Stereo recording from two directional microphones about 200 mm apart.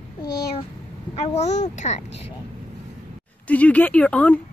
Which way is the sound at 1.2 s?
30° left (ahead or behind).